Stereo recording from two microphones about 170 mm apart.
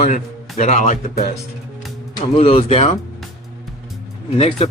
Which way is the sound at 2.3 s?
35° left (ahead or behind).